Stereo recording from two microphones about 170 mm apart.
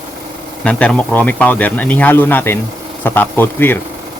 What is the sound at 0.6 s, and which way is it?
A man's voice, 5° left (ahead or behind).